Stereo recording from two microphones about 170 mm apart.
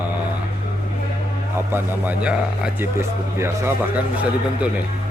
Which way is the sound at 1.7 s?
10° right (ahead or behind).